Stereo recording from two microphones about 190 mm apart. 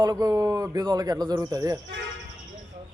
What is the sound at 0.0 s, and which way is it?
Speech, 20° right (ahead or behind).